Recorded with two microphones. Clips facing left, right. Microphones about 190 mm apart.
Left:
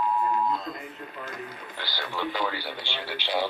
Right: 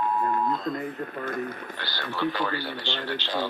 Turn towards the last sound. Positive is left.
turn(degrees=10)  # may be behind; listen again after turning